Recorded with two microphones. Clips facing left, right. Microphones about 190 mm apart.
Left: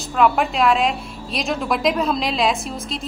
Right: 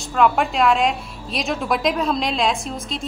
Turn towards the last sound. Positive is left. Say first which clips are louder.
# even
turn(degrees=0)  # may be behind; listen again after turning